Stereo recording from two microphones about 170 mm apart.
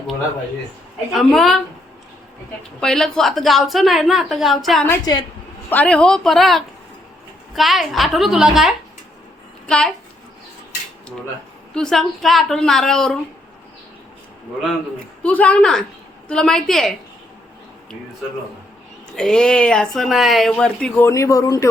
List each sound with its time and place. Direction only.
1.1 s speech: centre (ahead or behind)
2.8 s speech: 5° left (ahead or behind)
4.9 s a woman's voice: 25° left (ahead or behind)
5.6 s a woman's voice: 10° left (ahead or behind)
11.7 s speech: 5° left (ahead or behind)
14.6 s a man's voice: 5° left (ahead or behind)
19.1 s speech: 5° left (ahead or behind); by 21.7 s 20° left (ahead or behind)